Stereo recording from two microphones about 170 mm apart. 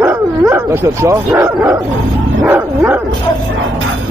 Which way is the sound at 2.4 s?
10° right (ahead or behind).